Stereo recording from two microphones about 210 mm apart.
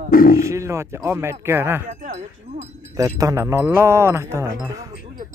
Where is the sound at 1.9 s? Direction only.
35° right (ahead or behind).